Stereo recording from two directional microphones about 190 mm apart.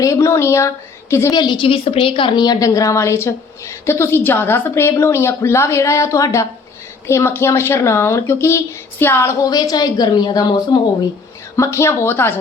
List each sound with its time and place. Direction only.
0.0 s a woman's voice: 15° left (ahead or behind)